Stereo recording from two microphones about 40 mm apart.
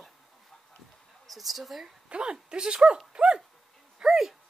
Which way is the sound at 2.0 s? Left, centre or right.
Right.